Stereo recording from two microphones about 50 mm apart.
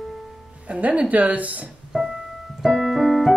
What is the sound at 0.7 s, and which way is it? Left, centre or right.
Music, right.